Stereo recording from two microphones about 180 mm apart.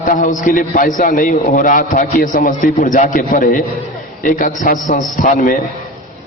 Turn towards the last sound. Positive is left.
turn(degrees=50)  # may be behind; listen again after turning